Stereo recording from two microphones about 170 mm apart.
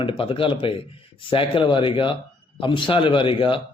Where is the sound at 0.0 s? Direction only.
30° left (ahead or behind).